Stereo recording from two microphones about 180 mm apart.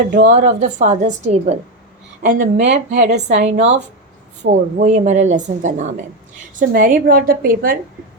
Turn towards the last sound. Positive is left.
turn(degrees=-55)  # may be behind; listen again after turning